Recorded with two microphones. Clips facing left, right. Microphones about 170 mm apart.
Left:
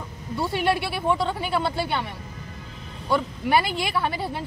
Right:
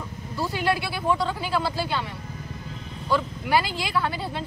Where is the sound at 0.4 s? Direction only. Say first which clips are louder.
Left 2 dB; 25° left (ahead or behind).